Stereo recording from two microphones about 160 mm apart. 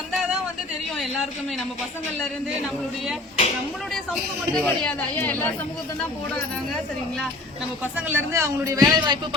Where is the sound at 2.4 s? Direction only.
Centre (ahead or behind).